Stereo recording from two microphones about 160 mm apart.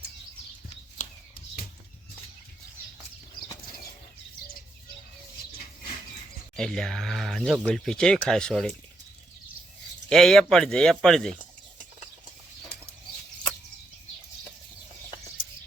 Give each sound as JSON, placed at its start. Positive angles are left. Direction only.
{"t": 6.6, "sound": "speech", "side_deg": 5}
{"t": 10.1, "sound": "speech", "side_deg": 5}
{"t": 12.7, "sound": "bird flight", "side_deg": 90}